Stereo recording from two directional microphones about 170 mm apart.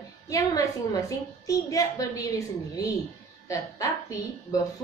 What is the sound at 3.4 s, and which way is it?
Speech, 20° left (ahead or behind).